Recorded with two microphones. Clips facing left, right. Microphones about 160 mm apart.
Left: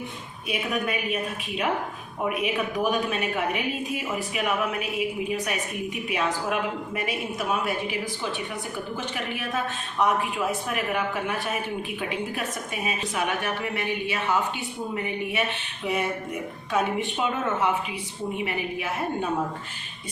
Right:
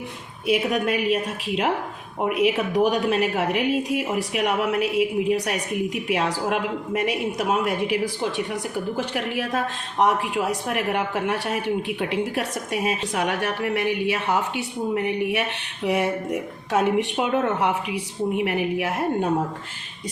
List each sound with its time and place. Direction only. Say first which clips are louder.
0.4 s a woman's voice: right 6 dB; 85° right
9.0 s a woman's voice: right 6 dB; 90° right